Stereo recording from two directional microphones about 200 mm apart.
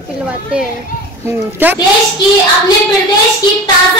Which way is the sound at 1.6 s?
10° right (ahead or behind).